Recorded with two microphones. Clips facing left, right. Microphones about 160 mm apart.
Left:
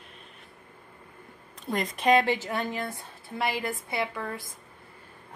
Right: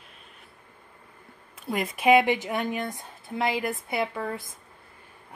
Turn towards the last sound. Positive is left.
turn(degrees=-20)  # may be behind; listen again after turning